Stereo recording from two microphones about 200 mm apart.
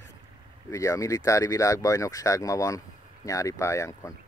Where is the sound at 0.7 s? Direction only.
15° left (ahead or behind).